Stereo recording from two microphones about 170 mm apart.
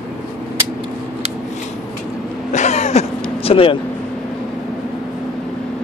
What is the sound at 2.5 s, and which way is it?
Vehicle, 45° left (ahead or behind).